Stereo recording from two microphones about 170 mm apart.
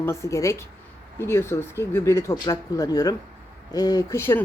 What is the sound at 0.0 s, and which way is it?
Speech, 15° left (ahead or behind).